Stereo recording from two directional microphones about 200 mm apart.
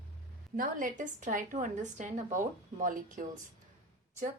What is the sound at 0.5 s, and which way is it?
A woman's voice, 45° right (ahead or behind).